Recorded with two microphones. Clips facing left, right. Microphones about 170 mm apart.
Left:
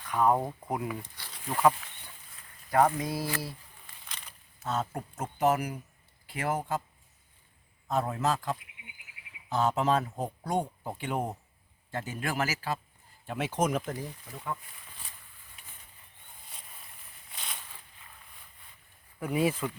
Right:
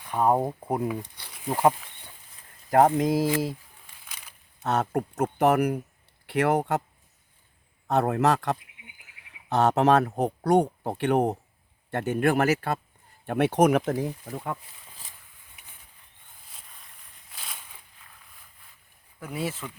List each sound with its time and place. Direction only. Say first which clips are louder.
0.1 s speech: right 3 dB; 25° right (ahead or behind)
0.9 s a sound: right 5 dB; 15° right (ahead or behind)
1.5 s speech: right 3 dB; 30° right (ahead or behind)
2.6 s speech: right 5 dB; 45° right (ahead or behind)
4.0 s a sound: left 1 dB; 5° right (ahead or behind)
4.6 s speech: right 7 dB; 70° right (ahead or behind)
7.9 s a man's voice: right 7 dB; 70° right (ahead or behind)
16.5 s a sound: left 1 dB; centre (ahead or behind)
19.2 s speech: left 4 dB; 10° left (ahead or behind)